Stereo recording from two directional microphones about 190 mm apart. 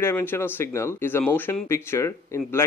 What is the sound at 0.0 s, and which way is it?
Speech, 10° left (ahead or behind).